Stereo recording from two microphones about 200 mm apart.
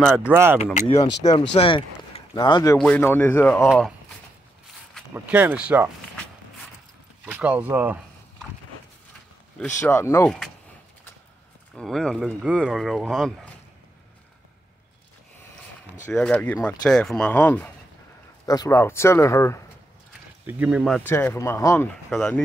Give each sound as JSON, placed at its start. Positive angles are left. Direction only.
{"t": 0.3, "sound": "speech", "side_deg": -10}
{"t": 0.7, "sound": "speech", "side_deg": 30}
{"t": 3.6, "sound": "speech", "side_deg": -5}
{"t": 5.1, "sound": "speech", "side_deg": -10}
{"t": 7.2, "sound": "speech", "side_deg": -10}
{"t": 9.6, "sound": "speech", "side_deg": 15}
{"t": 11.7, "sound": "speech", "side_deg": 0}
{"t": 16.1, "sound": "speech", "side_deg": 5}
{"t": 20.4, "sound": "speech", "side_deg": -5}
{"t": 21.0, "sound": "speech", "side_deg": 10}